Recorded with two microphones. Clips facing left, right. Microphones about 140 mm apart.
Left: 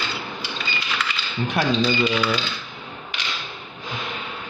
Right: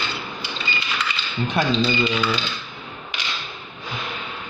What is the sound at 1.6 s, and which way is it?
Speech, 5° left (ahead or behind).